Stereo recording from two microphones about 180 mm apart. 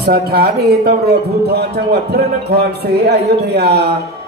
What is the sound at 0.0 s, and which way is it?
A man's voice, 60° right (ahead or behind).